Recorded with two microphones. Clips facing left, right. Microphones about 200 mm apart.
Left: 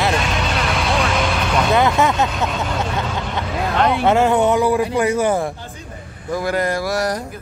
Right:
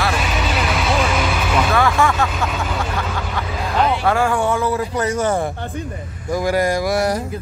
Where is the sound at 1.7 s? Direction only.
20° left (ahead or behind).